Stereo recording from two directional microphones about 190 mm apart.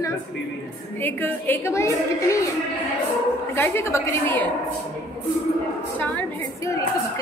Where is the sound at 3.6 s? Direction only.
15° left (ahead or behind).